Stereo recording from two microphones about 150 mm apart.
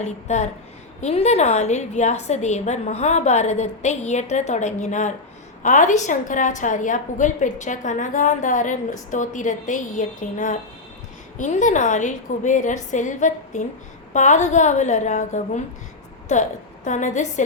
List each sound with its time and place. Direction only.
0.0 s a woman's voice: 50° left (ahead or behind)